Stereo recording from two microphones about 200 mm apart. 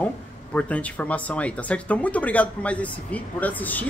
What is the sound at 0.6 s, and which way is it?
Speech, 5° left (ahead or behind).